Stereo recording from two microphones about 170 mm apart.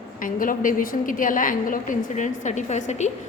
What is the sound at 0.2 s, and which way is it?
A woman's voice, 55° left (ahead or behind).